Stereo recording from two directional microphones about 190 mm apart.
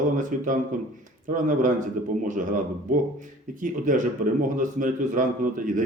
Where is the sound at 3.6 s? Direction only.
45° right (ahead or behind).